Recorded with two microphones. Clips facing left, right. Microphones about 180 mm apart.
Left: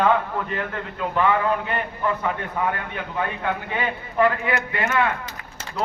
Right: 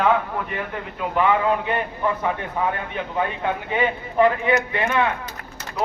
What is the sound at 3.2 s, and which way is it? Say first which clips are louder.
A man's voice: right 2 dB; 20° right (ahead or behind).